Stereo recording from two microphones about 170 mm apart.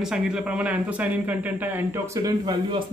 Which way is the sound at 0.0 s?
5° right (ahead or behind).